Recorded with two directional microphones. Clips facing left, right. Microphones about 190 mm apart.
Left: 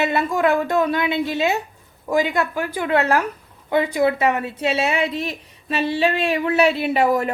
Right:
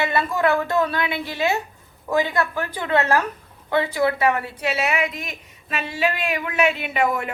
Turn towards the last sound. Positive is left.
turn(degrees=35)  # may be behind; listen again after turning